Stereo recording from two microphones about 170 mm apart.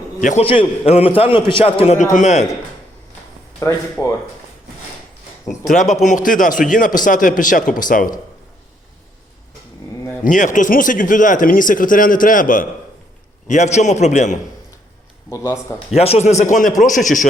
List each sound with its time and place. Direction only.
0.2 s a man's voice: 50° left (ahead or behind)
0.4 s a man's voice: 30° left (ahead or behind)
3.6 s speech: 15° left (ahead or behind)
5.5 s speech: 45° left (ahead or behind)
10.2 s speech: 50° left (ahead or behind)
16.0 s a man's voice: 40° left (ahead or behind)
16.4 s speech: 50° left (ahead or behind)